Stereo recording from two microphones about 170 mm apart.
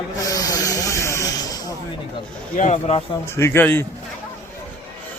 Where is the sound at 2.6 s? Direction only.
40° left (ahead or behind).